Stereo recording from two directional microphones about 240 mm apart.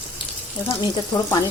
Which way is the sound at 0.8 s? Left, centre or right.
Centre.